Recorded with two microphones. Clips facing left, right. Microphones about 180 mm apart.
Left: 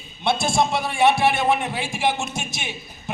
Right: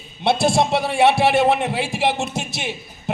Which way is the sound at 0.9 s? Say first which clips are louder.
Right 3 dB; 70° right (ahead or behind).